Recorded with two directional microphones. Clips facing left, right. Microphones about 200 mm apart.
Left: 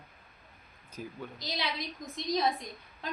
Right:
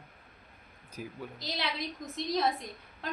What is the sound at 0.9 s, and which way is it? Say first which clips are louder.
Speech: even; 5° right (ahead or behind).